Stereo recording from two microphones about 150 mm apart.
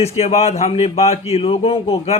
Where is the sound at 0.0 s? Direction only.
45° left (ahead or behind).